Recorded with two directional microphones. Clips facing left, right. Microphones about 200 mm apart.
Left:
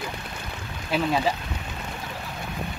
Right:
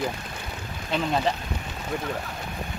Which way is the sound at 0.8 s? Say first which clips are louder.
Left 1 dB; 5° left (ahead or behind).